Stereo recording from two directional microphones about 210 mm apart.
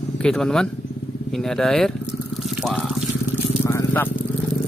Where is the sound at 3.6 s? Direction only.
10° left (ahead or behind).